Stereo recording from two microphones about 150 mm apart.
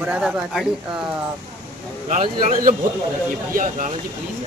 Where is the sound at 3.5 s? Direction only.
60° right (ahead or behind).